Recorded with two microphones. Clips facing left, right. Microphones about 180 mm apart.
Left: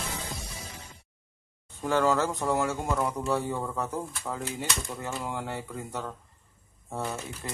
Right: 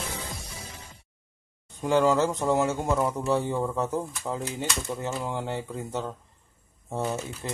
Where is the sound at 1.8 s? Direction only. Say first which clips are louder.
Right 3 dB; 15° right (ahead or behind).